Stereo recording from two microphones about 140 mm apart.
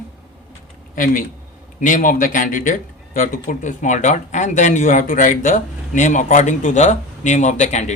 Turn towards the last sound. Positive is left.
turn(degrees=55)  # may be behind; listen again after turning